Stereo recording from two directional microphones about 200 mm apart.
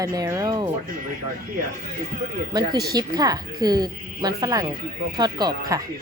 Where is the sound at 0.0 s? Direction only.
20° right (ahead or behind).